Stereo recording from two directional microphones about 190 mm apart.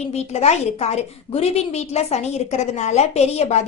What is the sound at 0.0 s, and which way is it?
A woman's voice, 35° left (ahead or behind).